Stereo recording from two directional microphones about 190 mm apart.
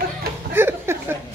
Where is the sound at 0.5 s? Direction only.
10° right (ahead or behind).